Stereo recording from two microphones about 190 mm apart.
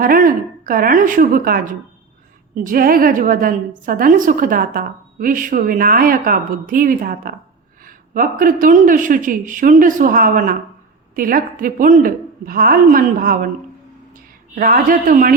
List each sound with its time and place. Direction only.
0.0 s a woman's voice: 45° right (ahead or behind)
14.5 s a woman's voice: 50° right (ahead or behind)